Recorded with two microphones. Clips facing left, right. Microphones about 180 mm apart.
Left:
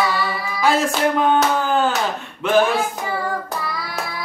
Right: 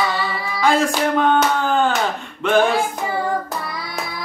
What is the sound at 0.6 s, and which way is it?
Speech, 5° left (ahead or behind).